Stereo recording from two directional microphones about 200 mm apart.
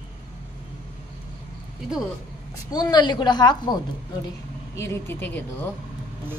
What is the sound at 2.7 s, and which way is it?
A woman's voice, 20° left (ahead or behind).